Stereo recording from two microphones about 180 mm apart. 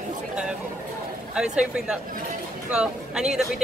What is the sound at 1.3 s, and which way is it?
Speech, 5° right (ahead or behind).